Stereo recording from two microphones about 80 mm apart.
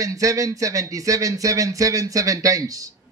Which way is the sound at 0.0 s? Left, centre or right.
Right.